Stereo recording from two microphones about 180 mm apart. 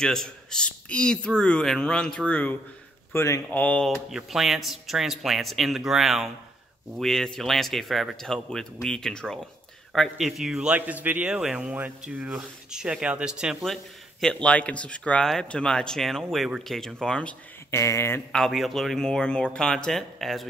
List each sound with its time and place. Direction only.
0.0 s speech: 5° left (ahead or behind)
17.6 s speech: 15° left (ahead or behind)
18.3 s speech: centre (ahead or behind)